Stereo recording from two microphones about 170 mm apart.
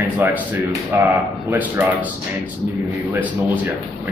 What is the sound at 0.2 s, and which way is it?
Speech, 10° right (ahead or behind).